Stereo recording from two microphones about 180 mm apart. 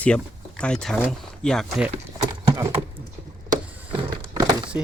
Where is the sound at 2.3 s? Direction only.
20° right (ahead or behind).